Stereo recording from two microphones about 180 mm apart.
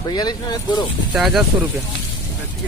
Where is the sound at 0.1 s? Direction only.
20° left (ahead or behind).